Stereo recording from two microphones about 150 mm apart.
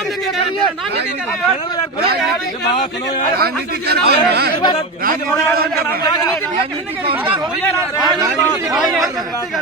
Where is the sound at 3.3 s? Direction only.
90° right.